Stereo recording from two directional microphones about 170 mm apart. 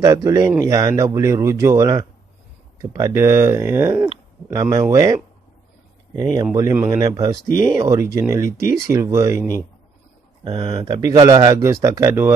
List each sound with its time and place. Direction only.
0.0 s speech: 20° right (ahead or behind)
10.4 s speech: 30° right (ahead or behind); by 12.4 s 10° right (ahead or behind)